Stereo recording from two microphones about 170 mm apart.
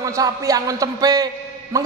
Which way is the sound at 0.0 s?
20° right (ahead or behind).